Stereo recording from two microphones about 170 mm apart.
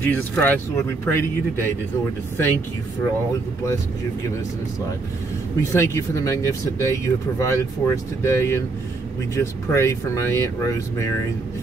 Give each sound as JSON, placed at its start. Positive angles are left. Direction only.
{"t": 0.0, "sound": "speech", "side_deg": 10}
{"t": 5.6, "sound": "speech", "side_deg": 15}